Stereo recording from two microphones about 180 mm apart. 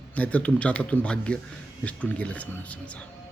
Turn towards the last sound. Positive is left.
turn(degrees=5)  # may be behind; listen again after turning